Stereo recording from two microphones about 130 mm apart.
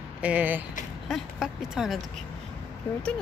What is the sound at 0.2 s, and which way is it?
Speech, 10° right (ahead or behind).